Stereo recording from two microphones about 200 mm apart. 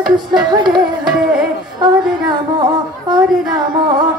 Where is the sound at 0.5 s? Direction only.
20° right (ahead or behind).